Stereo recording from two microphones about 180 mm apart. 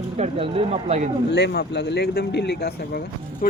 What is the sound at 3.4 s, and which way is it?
Speech, 45° left (ahead or behind).